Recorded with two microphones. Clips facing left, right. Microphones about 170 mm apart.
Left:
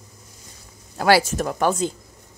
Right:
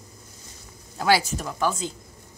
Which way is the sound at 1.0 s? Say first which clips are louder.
Left 4 dB; 65° left (ahead or behind).